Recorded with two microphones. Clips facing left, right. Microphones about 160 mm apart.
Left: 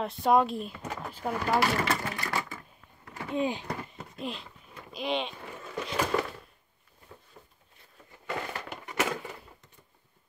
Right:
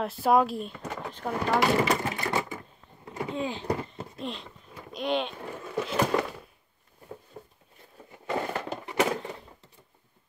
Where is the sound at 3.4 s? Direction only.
15° left (ahead or behind).